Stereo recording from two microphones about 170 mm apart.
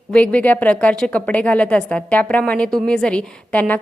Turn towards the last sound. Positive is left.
turn(degrees=10)  # may be behind; listen again after turning